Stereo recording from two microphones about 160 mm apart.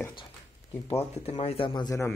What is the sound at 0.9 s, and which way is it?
Speech, 40° left (ahead or behind).